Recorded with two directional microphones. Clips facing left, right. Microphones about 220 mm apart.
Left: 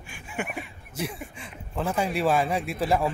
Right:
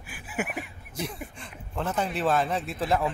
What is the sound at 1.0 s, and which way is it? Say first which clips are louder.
Speech: left 2 dB; 5° left (ahead or behind).